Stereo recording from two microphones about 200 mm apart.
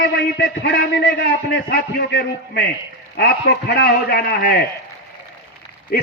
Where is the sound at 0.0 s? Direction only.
60° left (ahead or behind).